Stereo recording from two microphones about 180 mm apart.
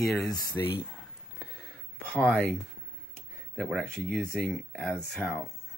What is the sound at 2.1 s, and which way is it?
Speech, 5° left (ahead or behind).